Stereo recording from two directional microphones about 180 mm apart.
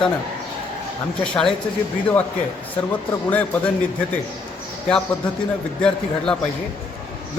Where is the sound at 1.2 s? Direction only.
5° left (ahead or behind).